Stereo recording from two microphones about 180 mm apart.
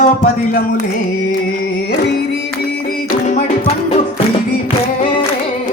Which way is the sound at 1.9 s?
65° left (ahead or behind).